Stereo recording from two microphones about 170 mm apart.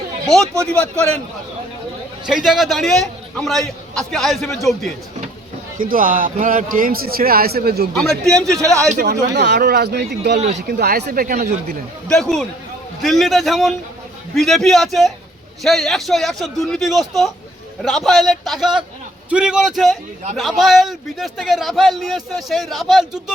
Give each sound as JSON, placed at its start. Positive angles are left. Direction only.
{"t": 0.7, "sound": "a man's voice", "side_deg": 5}
{"t": 2.2, "sound": "a man's voice", "side_deg": 0}
{"t": 5.8, "sound": "a man's voice", "side_deg": -55}
{"t": 8.1, "sound": "a man's voice", "side_deg": 0}
{"t": 8.5, "sound": "a man's voice", "side_deg": -20}
{"t": 9.3, "sound": "speech", "side_deg": -90}
{"t": 10.3, "sound": "speech", "side_deg": -40}
{"t": 10.7, "sound": "a man's voice", "side_deg": -65}
{"t": 12.0, "sound": "a man's voice", "side_deg": 5}